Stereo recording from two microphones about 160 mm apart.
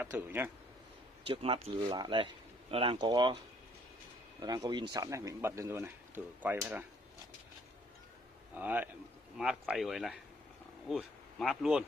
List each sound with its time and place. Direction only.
0.0 s speech: 15° right (ahead or behind)
1.2 s speech: 35° right (ahead or behind)
4.4 s speech: 25° right (ahead or behind)
8.5 s speech: 10° right (ahead or behind)